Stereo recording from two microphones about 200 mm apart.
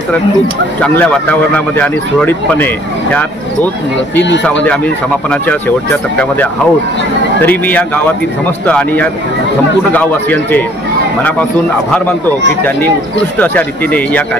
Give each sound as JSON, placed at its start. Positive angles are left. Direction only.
{"t": 0.7, "sound": "speech", "side_deg": 5}
{"t": 7.4, "sound": "speech", "side_deg": 10}
{"t": 13.4, "sound": "speech", "side_deg": 10}